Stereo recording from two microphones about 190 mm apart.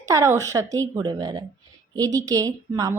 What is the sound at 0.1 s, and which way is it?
A woman's voice, 15° right (ahead or behind).